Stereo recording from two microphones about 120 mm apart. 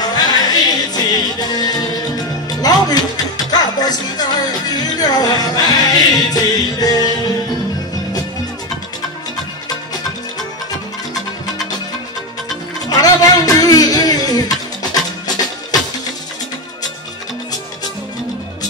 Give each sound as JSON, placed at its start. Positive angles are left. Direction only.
{"t": 0.0, "sound": "music", "side_deg": 35}
{"t": 12.9, "sound": "music", "side_deg": 30}